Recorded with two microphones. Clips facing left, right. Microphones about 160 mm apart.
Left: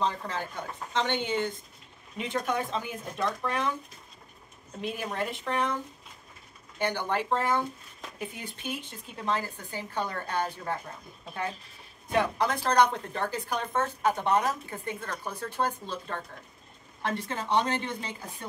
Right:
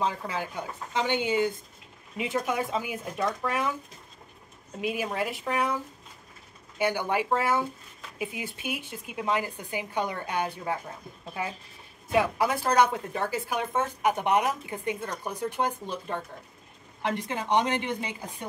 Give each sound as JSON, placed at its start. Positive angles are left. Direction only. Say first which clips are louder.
{"t": 0.0, "sound": "a woman's voice", "louder": "right 1 dB", "side_deg": -10}
{"t": 4.7, "sound": "a woman's voice", "louder": "right 3 dB", "side_deg": -5}
{"t": 6.8, "sound": "a woman's voice", "louder": "right 3 dB", "side_deg": -10}